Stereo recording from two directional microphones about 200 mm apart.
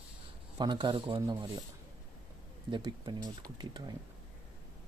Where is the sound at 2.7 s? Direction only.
20° right (ahead or behind).